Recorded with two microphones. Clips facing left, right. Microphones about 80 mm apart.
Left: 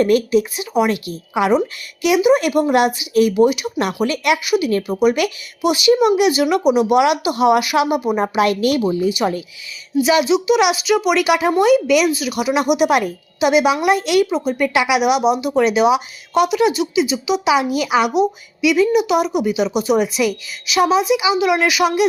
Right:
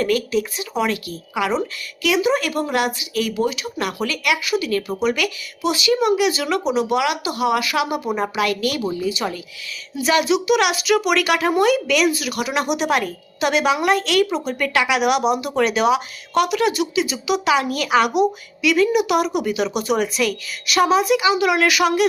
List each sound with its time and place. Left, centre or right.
0.0 s speech: left
4.9 s speech: centre
9.9 s a woman's voice: centre